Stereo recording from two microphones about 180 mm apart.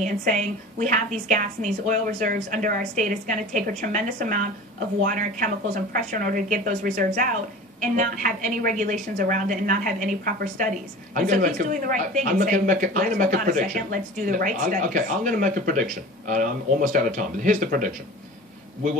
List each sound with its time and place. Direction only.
0.0 s speech: 45° right (ahead or behind)